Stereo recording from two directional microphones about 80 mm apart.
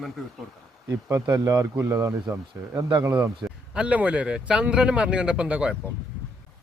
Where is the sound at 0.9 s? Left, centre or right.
Right.